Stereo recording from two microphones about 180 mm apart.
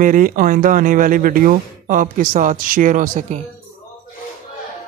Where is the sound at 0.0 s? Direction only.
50° right (ahead or behind).